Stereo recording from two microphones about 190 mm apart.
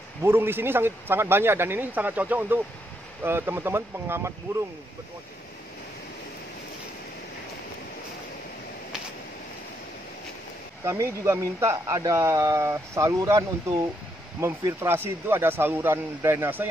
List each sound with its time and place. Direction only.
0.2 s speech: 10° right (ahead or behind)
10.8 s speech: 15° right (ahead or behind)